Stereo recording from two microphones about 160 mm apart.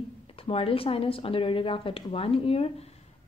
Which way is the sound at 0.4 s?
35° left (ahead or behind).